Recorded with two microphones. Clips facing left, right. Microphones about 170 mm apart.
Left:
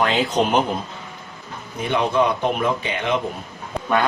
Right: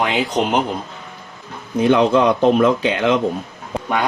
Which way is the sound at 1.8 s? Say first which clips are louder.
Right 6 dB; 90° right.